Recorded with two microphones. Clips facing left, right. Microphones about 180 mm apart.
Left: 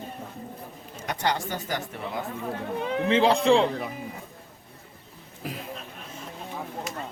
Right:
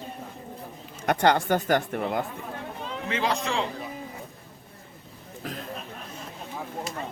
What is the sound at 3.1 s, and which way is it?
Speech, 30° left (ahead or behind).